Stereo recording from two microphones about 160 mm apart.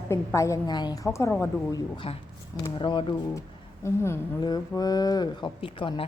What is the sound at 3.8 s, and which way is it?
Speech, 15° left (ahead or behind).